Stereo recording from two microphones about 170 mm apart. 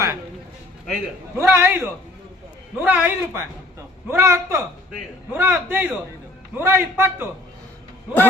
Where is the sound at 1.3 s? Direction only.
15° right (ahead or behind).